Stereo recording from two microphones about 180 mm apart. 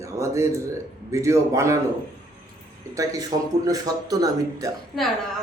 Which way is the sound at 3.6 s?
20° right (ahead or behind).